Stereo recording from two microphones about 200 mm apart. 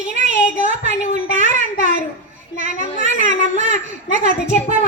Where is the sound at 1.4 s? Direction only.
40° right (ahead or behind).